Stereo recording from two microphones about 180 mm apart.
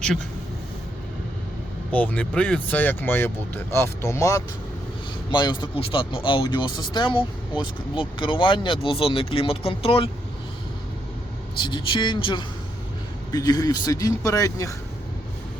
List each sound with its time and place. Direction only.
1.9 s speech: 10° left (ahead or behind); by 10.1 s 30° left (ahead or behind)
11.6 s speech: 25° left (ahead or behind)